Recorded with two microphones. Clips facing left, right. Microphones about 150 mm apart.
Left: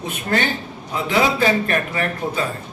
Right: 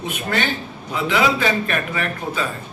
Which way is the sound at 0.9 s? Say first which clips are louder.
Even; 40° left (ahead or behind).